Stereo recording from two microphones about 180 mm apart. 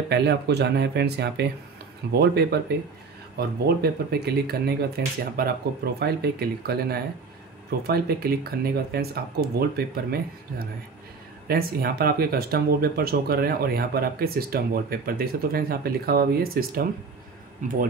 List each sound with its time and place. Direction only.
0.1 s speech: 70° right (ahead or behind)
17.6 s speech: 45° right (ahead or behind)